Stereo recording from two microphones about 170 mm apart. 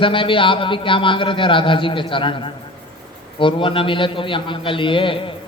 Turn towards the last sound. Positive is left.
turn(degrees=30)  # may be behind; listen again after turning